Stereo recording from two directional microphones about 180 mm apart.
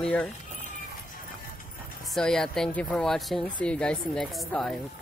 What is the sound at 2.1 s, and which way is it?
Speech, 5° left (ahead or behind).